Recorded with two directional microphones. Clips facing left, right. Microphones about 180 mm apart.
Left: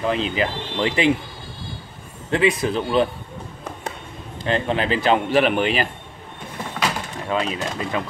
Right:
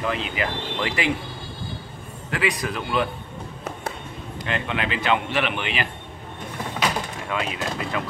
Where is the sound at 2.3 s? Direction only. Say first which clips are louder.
Left 6 dB; 25° left (ahead or behind).